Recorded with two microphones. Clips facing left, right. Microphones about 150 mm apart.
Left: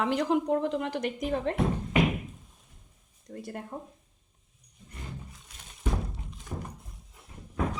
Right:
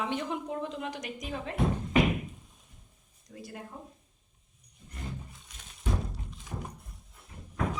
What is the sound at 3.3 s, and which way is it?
Speech, 50° left (ahead or behind).